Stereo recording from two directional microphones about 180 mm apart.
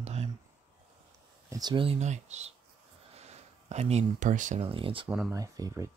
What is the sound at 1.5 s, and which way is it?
Speech, 25° right (ahead or behind).